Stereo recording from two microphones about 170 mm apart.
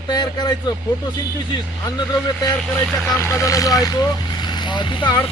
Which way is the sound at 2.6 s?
5° left (ahead or behind).